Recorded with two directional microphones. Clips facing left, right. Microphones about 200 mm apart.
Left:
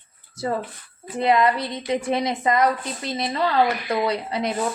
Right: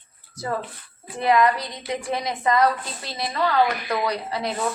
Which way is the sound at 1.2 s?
25° left (ahead or behind).